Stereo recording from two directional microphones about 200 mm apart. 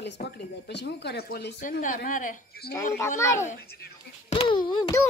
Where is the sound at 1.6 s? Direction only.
40° left (ahead or behind).